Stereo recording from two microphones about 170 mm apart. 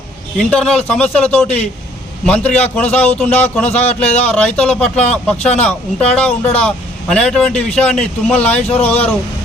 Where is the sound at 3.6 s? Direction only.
40° left (ahead or behind).